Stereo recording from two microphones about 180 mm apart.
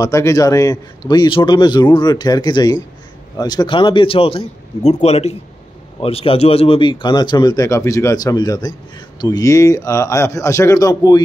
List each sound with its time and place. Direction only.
0.0 s a man's voice: 20° left (ahead or behind)